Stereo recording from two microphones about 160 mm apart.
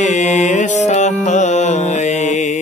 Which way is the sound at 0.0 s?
50° left (ahead or behind).